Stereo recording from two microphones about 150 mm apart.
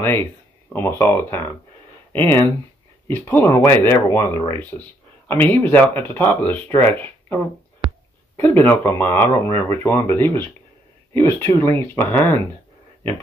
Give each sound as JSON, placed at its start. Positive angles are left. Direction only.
{"t": 0.7, "sound": "speech", "side_deg": 15}
{"t": 8.4, "sound": "speech", "side_deg": 15}